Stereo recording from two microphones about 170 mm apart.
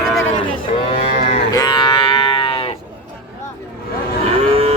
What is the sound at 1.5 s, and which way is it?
Music, 25° left (ahead or behind).